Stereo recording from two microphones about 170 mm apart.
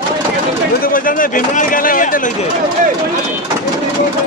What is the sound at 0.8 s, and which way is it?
Speech, 55° left (ahead or behind).